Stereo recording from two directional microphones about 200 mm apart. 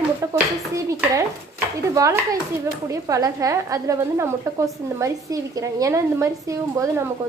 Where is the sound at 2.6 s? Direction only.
15° right (ahead or behind).